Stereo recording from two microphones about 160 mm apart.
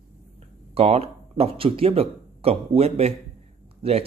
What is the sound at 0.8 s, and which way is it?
Speech, 40° right (ahead or behind).